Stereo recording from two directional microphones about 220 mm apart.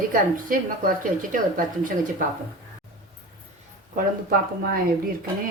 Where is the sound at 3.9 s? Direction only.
40° right (ahead or behind).